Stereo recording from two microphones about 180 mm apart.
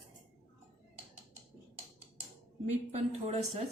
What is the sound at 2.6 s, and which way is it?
Speech, 40° right (ahead or behind).